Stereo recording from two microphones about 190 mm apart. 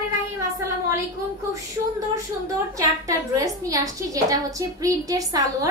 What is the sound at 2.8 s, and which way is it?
A woman's voice, 15° right (ahead or behind).